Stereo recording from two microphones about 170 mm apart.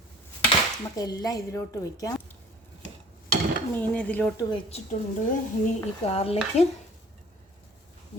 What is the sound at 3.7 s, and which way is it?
Speech, 5° left (ahead or behind).